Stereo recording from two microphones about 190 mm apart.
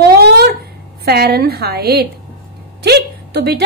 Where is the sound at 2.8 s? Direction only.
60° right (ahead or behind).